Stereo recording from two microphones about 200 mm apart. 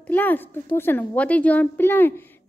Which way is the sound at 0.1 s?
10° left (ahead or behind).